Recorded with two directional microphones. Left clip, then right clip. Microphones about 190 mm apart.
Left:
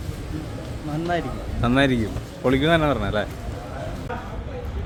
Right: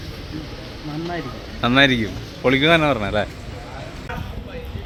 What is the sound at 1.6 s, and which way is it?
A man's voice, 10° right (ahead or behind).